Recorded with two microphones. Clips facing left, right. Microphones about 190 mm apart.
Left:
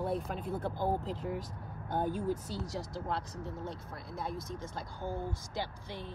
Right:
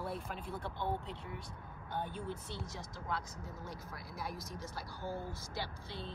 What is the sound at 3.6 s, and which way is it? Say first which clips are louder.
Speech: left 5 dB; 25° left (ahead or behind).